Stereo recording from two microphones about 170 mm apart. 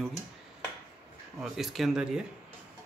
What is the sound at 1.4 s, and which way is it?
Speech, centre (ahead or behind).